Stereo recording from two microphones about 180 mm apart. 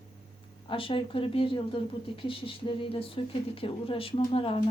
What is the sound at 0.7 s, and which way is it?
Speech, 30° left (ahead or behind).